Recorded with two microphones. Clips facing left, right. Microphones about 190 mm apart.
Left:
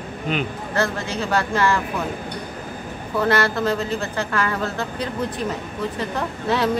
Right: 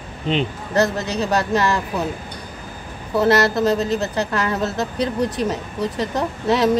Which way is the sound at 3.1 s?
35° right (ahead or behind).